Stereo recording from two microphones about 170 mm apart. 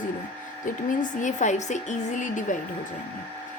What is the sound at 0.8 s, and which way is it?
A woman's voice, 50° left (ahead or behind).